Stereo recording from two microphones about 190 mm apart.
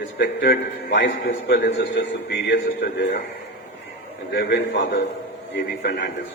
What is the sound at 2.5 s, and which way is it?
Speech, 50° left (ahead or behind).